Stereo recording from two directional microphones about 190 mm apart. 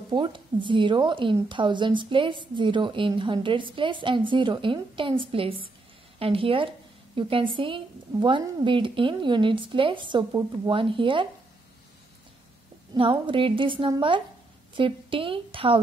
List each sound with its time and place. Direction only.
0.1 s a woman's voice: 25° right (ahead or behind)
12.9 s a woman's voice: 25° right (ahead or behind)